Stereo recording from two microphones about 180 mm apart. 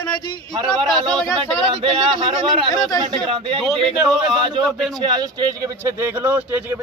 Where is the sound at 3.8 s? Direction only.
Centre (ahead or behind).